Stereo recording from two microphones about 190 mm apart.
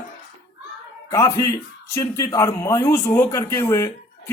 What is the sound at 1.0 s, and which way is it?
A man's voice, 20° left (ahead or behind).